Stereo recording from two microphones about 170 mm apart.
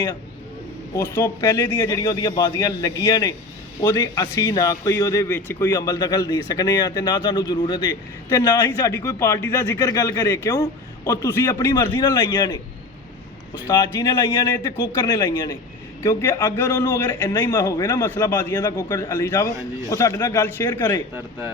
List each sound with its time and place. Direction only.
1.1 s a man's voice: 15° left (ahead or behind)
13.7 s a man's voice: 25° left (ahead or behind)